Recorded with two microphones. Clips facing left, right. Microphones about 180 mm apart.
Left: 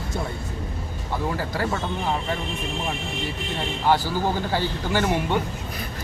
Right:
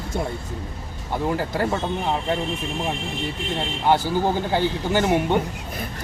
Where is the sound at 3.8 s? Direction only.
20° right (ahead or behind).